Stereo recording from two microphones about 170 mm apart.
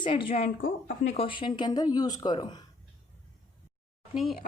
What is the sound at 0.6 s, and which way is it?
Speech, 55° left (ahead or behind).